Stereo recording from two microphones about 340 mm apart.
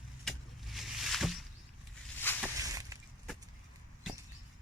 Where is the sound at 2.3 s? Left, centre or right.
Centre.